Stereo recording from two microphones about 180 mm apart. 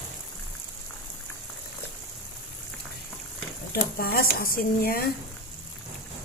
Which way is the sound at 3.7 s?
55° left (ahead or behind).